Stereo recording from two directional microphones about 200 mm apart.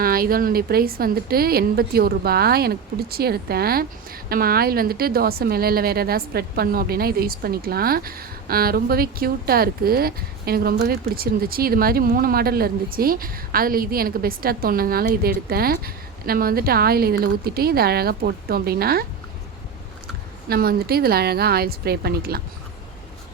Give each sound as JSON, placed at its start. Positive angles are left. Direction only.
{"t": 0.0, "sound": "a woman's voice", "side_deg": -45}
{"t": 20.5, "sound": "a woman's voice", "side_deg": -50}